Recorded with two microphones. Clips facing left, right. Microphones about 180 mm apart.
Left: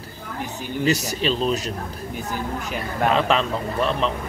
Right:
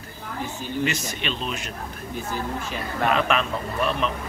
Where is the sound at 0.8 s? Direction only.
35° left (ahead or behind).